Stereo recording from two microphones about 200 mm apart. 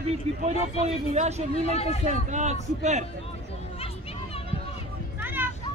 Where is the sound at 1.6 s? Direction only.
30° left (ahead or behind).